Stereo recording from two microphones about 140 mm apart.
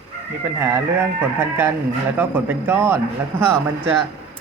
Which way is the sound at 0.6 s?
15° right (ahead or behind).